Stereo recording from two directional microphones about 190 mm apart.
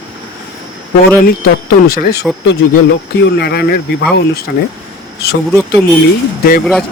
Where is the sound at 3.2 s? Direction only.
60° left (ahead or behind).